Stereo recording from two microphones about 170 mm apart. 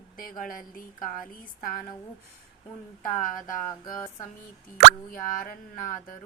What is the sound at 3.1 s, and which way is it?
Speech, 55° left (ahead or behind).